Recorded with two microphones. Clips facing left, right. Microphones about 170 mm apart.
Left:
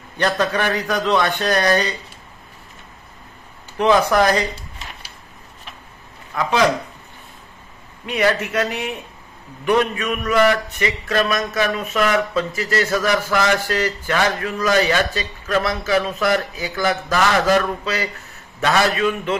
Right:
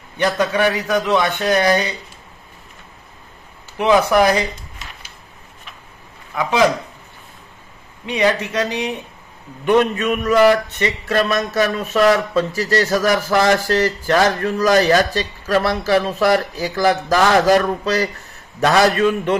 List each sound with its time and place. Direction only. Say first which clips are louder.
0.2 s a man's voice: right 3 dB; 10° right (ahead or behind)
3.7 s a man's voice: right 1 dB; 10° right (ahead or behind)
8.1 s a man's voice: right 1 dB; 15° right (ahead or behind)
9.7 s speech: right 3 dB; 25° right (ahead or behind)